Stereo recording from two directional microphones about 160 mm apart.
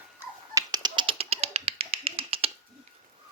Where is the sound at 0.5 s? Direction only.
25° right (ahead or behind).